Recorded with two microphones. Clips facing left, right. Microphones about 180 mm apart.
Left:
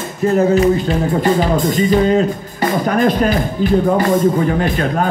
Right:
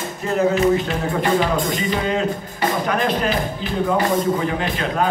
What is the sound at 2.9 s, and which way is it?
Speech, 45° left (ahead or behind).